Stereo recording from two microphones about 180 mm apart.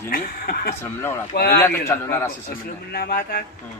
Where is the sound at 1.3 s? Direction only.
60° left (ahead or behind).